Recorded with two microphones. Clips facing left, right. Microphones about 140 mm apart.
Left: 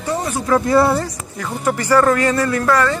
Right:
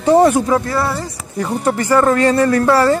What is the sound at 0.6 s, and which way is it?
Speech, 25° left (ahead or behind).